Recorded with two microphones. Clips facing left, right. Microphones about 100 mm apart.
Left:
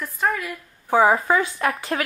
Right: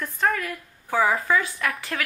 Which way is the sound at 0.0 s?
5° left (ahead or behind).